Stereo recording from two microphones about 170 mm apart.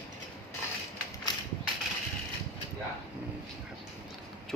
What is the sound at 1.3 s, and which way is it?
Mechanisms, 25° left (ahead or behind).